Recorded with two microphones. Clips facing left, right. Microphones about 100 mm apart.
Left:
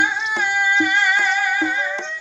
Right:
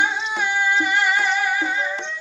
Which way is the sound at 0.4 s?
5° right (ahead or behind).